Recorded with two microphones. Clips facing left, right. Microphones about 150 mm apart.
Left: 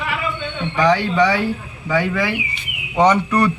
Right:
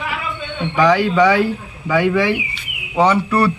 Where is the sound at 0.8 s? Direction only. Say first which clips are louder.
Right 2 dB; 10° right (ahead or behind).